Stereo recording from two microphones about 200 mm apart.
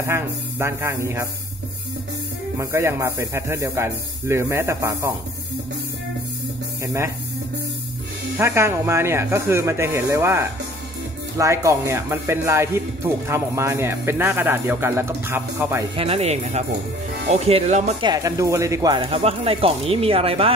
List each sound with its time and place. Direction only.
0.0 s speech: 15° right (ahead or behind)
2.5 s speech: 15° right (ahead or behind)
6.8 s speech: 15° right (ahead or behind)
8.4 s speech: 15° right (ahead or behind)
16.0 s speech: 30° right (ahead or behind)
18.0 s speech: 15° right (ahead or behind)